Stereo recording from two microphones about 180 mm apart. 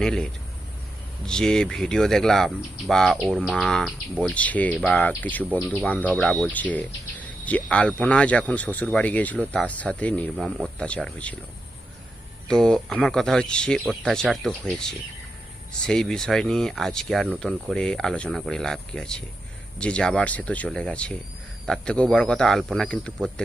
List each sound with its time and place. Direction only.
0.0 s speech: 5° left (ahead or behind)
12.5 s speech: 5° left (ahead or behind)